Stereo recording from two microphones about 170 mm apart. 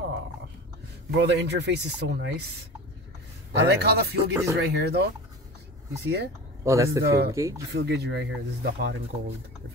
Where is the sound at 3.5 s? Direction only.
80° right.